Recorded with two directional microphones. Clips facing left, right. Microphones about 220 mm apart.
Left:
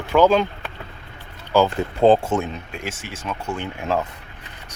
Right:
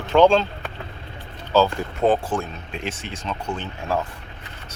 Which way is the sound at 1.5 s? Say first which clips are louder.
Left 1 dB; 15° left (ahead or behind).